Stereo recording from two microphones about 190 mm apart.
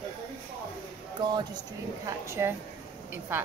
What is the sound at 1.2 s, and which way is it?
Speech, 20° right (ahead or behind).